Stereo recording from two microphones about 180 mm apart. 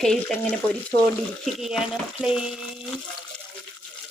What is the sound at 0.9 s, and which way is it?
Speech, 20° left (ahead or behind).